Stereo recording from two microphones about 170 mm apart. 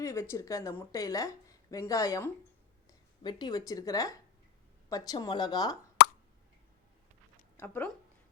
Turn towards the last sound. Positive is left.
turn(degrees=10)  # may be behind; listen again after turning